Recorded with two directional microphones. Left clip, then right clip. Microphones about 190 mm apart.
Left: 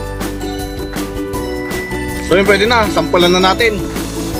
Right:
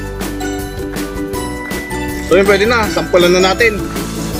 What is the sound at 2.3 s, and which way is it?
Speech, 65° left (ahead or behind).